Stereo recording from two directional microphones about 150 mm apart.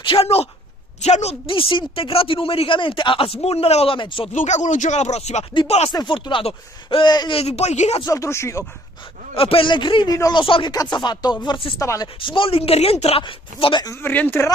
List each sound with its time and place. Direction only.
0.0 s speech: 40° left (ahead or behind)
4.3 s speech: 55° left (ahead or behind)
5.5 s speech: 35° left (ahead or behind); by 8.0 s 50° left (ahead or behind)
8.0 s speech: 20° left (ahead or behind)
9.3 s speech: 35° left (ahead or behind)
11.8 s speech: 20° left (ahead or behind)
12.2 s speech: 35° left (ahead or behind)
13.8 s speech: 15° left (ahead or behind)